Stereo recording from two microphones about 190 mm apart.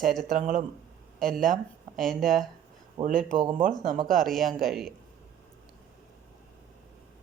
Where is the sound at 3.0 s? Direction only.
20° right (ahead or behind).